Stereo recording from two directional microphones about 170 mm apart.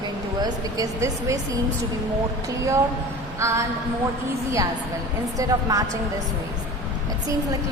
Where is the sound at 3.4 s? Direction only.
15° right (ahead or behind).